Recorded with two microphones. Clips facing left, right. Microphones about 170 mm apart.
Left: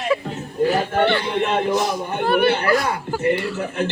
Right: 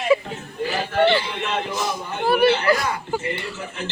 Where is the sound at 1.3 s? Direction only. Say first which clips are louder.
Left 7 dB; 50° left (ahead or behind).